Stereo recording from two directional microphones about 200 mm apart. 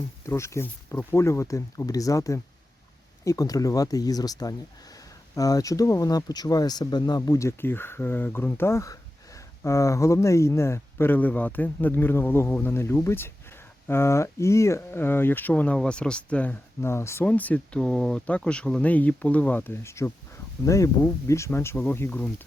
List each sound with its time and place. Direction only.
0.3 s speech: 15° left (ahead or behind)